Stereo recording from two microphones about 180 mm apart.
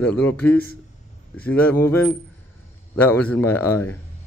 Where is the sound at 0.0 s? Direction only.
5° left (ahead or behind).